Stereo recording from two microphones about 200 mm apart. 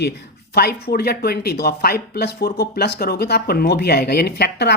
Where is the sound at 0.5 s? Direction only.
50° left (ahead or behind).